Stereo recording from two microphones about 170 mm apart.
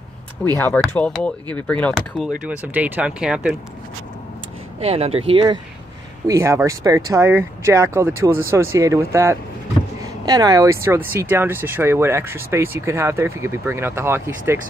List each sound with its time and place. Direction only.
0.6 s speech: 15° left (ahead or behind)
2.4 s speech: 10° right (ahead or behind)
4.7 s speech: 35° right (ahead or behind)
6.2 s speech: 15° right (ahead or behind)